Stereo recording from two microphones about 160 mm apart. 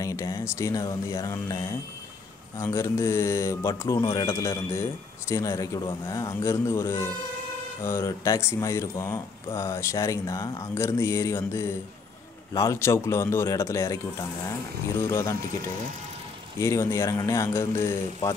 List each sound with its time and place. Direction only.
0.0 s speech: 20° left (ahead or behind)
16.5 s speech: 15° left (ahead or behind)